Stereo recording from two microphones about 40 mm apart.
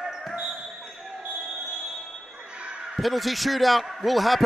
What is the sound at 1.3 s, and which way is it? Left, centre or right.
Basketball bounce, right.